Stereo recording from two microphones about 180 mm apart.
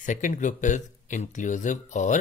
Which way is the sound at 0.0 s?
45° left (ahead or behind).